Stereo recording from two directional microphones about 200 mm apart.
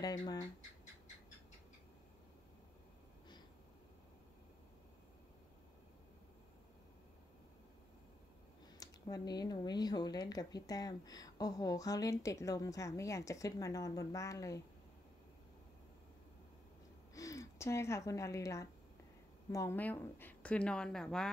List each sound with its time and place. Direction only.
0.0 s speech: 20° left (ahead or behind)
8.7 s speech: 20° left (ahead or behind)
17.1 s speech: 15° left (ahead or behind)